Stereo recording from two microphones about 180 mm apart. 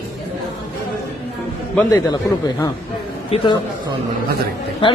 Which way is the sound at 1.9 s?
20° left (ahead or behind).